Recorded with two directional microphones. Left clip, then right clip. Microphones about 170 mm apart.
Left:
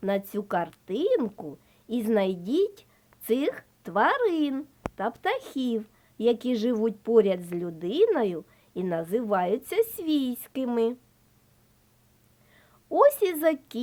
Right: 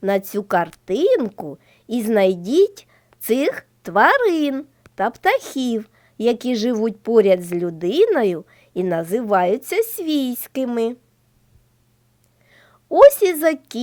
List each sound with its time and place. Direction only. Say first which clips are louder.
0.0 s a woman's voice: right 8 dB; 35° right (ahead or behind)
12.5 s a woman's voice: right 7 dB; 35° right (ahead or behind)